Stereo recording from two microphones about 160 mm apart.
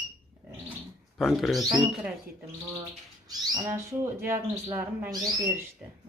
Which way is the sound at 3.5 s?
15° right (ahead or behind).